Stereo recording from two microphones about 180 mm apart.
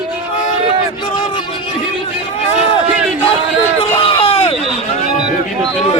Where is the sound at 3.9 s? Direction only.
30° left (ahead or behind).